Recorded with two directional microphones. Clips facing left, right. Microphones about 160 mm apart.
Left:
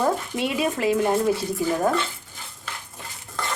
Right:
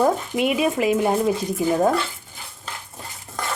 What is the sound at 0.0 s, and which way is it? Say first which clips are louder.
Speech: right 4 dB; 20° right (ahead or behind).